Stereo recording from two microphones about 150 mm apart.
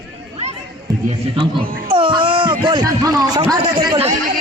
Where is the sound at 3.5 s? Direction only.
30° right (ahead or behind).